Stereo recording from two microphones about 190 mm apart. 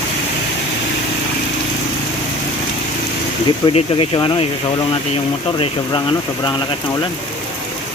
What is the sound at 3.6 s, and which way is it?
Speech, 25° left (ahead or behind).